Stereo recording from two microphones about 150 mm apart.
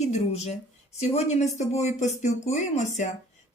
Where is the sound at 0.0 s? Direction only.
50° left (ahead or behind).